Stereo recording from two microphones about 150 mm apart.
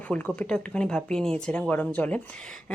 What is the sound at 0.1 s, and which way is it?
Speech, 10° left (ahead or behind).